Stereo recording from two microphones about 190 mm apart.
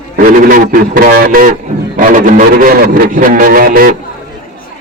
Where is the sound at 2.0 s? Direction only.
45° right (ahead or behind).